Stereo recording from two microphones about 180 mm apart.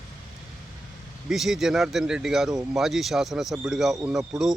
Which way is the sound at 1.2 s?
Centre (ahead or behind).